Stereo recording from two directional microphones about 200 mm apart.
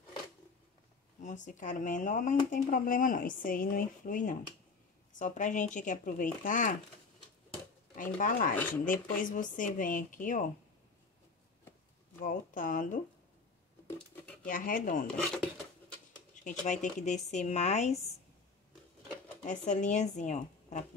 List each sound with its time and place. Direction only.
1.2 s speech: 40° left (ahead or behind)
7.9 s speech: 40° left (ahead or behind)
12.2 s speech: 40° left (ahead or behind)
14.4 s speech: 45° left (ahead or behind)
16.4 s speech: 35° left (ahead or behind)
19.4 s speech: 35° left (ahead or behind)